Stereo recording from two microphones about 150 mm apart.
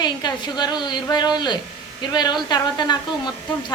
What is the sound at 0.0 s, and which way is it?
A woman's voice, 30° left (ahead or behind).